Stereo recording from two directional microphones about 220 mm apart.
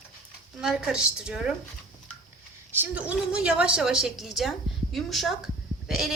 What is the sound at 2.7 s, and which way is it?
A woman's voice, 5° right (ahead or behind).